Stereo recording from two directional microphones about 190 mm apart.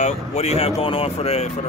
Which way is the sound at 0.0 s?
35° left (ahead or behind).